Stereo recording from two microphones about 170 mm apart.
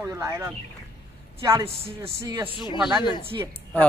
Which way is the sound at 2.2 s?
15° right (ahead or behind).